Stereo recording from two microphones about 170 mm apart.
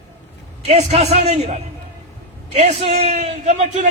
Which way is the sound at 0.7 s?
35° right (ahead or behind).